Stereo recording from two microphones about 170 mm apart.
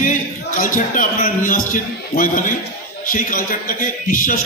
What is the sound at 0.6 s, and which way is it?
A man's voice, 50° left (ahead or behind).